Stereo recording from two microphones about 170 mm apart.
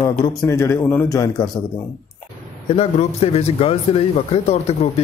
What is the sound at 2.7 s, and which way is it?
Speech, 40° left (ahead or behind).